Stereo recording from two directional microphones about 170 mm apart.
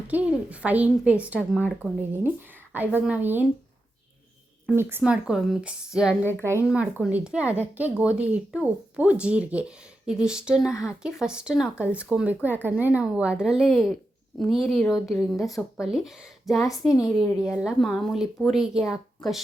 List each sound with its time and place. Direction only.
0.1 s a woman's voice: 10° right (ahead or behind)
4.6 s a woman's voice: 15° right (ahead or behind)
6.4 s a woman's voice: 15° right (ahead or behind)
6.7 s a woman's voice: 5° right (ahead or behind)
10.7 s speech: 15° left (ahead or behind)
11.0 s a woman's voice: 5° right (ahead or behind)
16.9 s a woman's voice: 20° left (ahead or behind)
17.6 s speech: centre (ahead or behind)